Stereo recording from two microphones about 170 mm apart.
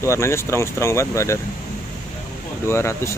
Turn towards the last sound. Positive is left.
turn(degrees=15)  # may be behind; listen again after turning